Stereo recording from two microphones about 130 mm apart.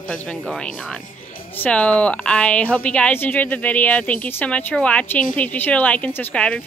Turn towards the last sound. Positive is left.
turn(degrees=10)  # may be behind; listen again after turning